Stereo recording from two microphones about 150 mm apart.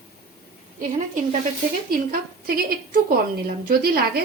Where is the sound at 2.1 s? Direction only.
80° right.